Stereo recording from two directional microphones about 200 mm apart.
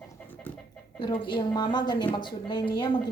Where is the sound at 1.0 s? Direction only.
25° left (ahead or behind).